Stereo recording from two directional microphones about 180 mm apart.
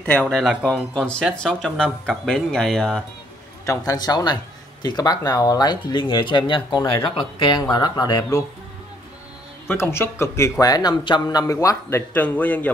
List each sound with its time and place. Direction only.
0.0 s speech: 5° left (ahead or behind)
3.6 s speech: 20° left (ahead or behind)
9.7 s speech: 15° left (ahead or behind)